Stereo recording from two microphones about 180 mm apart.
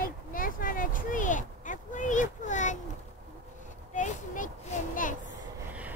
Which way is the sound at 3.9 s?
45° left (ahead or behind).